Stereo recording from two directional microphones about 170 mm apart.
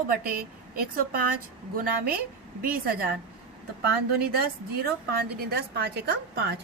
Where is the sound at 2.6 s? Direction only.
60° right (ahead or behind).